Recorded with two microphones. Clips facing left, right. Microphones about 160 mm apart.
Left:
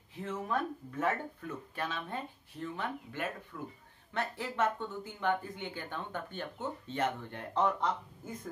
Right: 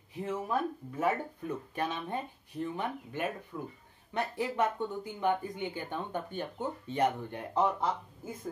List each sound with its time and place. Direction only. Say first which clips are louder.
0.2 s speech: right 2 dB; 10° right (ahead or behind)
3.5 s speech: right 3 dB; 30° right (ahead or behind)
4.1 s speech: right 4 dB; 15° right (ahead or behind)